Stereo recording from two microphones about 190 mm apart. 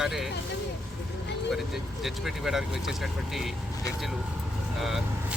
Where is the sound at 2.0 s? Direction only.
Centre (ahead or behind).